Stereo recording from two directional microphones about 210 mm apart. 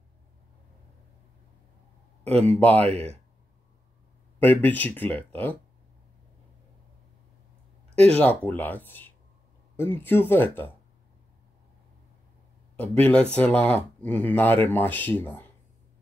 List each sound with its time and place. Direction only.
2.3 s speech: 5° left (ahead or behind)
2.9 s speech: 30° right (ahead or behind)
4.4 s speech: 10° left (ahead or behind)
8.0 s speech: 5° left (ahead or behind)
13.0 s speech: 5° left (ahead or behind)